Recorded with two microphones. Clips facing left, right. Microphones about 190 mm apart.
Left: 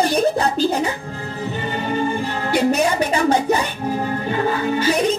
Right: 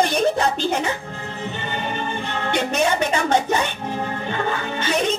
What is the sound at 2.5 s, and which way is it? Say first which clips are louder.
Music: left 3 dB; 35° left (ahead or behind).